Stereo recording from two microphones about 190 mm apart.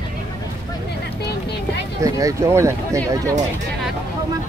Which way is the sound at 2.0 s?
15° right (ahead or behind).